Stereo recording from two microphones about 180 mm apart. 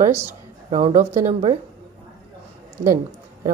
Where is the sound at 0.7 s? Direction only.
40° right (ahead or behind).